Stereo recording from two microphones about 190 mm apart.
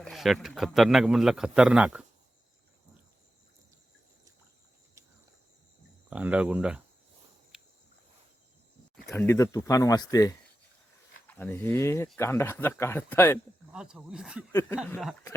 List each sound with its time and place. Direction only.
0.0 s a man's voice: centre (ahead or behind)
6.1 s speech: 5° right (ahead or behind)
9.0 s a sound: centre (ahead or behind)
9.2 s speech: 15° left (ahead or behind)
13.7 s a man's voice: 5° right (ahead or behind)
14.5 s speech: 10° left (ahead or behind)